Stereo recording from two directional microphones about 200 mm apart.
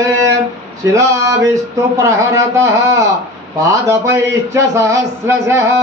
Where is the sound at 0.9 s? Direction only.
15° right (ahead or behind).